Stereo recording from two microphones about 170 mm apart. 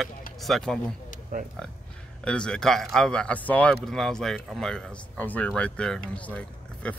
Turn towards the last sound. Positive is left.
turn(degrees=10)  # may be behind; listen again after turning